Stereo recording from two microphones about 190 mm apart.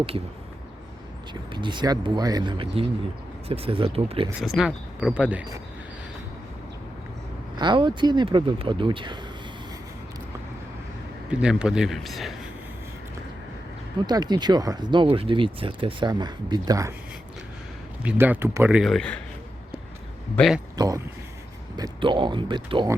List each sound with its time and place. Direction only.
1.3 s speech: 25° right (ahead or behind)
4.4 s speech: centre (ahead or behind)
7.5 s speech: 25° right (ahead or behind)
11.3 s speech: 5° right (ahead or behind)
14.1 s speech: 20° right (ahead or behind)
18.0 s a man's voice: 10° right (ahead or behind)
20.3 s speech: centre (ahead or behind)
20.7 s speech: 20° right (ahead or behind)